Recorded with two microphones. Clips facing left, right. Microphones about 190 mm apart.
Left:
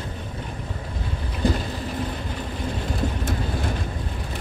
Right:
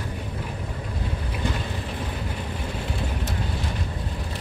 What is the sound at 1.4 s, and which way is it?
Vehicle, 35° left (ahead or behind).